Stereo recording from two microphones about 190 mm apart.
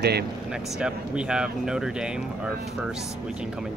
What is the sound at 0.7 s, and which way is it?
Speech, 5° right (ahead or behind).